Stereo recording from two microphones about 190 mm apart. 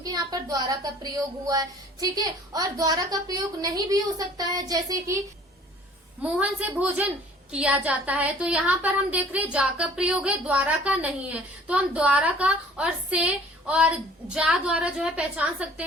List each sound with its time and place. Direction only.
0.0 s speech: 20° right (ahead or behind)
6.3 s a woman's voice: 5° right (ahead or behind)